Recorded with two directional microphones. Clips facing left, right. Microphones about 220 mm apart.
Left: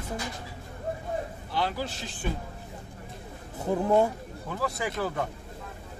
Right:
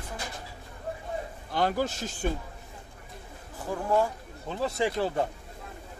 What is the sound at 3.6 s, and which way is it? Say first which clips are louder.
Speech: left 3 dB; 20° left (ahead or behind).